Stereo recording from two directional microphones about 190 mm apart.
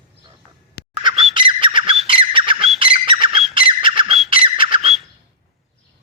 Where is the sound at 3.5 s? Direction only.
25° right (ahead or behind).